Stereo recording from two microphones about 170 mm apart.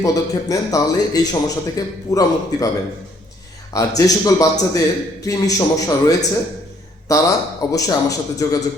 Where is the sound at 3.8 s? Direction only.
20° left (ahead or behind).